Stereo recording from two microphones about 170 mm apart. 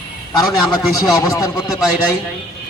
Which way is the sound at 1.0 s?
20° left (ahead or behind).